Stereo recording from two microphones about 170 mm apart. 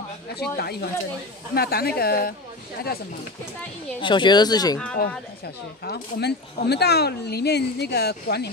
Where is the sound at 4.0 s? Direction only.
30° left (ahead or behind).